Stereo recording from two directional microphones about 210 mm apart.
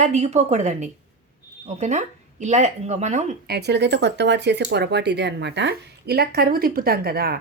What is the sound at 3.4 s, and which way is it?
Speech, 50° right (ahead or behind).